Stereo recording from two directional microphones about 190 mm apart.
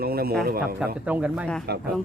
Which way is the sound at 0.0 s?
55° right (ahead or behind).